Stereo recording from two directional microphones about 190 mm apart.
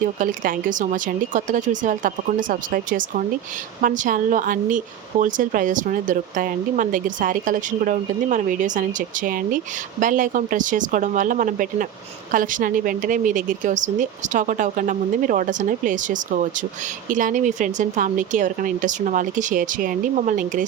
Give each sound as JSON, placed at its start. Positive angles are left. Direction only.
{"t": 0.0, "sound": "speech", "side_deg": -45}